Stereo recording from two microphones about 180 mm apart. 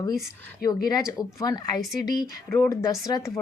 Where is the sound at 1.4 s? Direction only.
20° left (ahead or behind).